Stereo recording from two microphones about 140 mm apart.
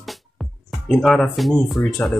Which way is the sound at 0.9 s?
Centre (ahead or behind).